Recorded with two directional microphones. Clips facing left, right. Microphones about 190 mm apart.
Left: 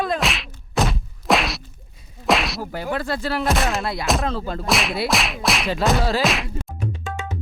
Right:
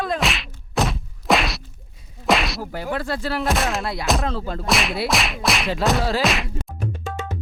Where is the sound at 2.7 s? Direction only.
90° left.